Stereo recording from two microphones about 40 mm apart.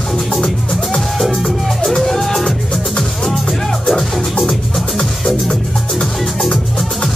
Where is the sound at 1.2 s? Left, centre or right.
Centre.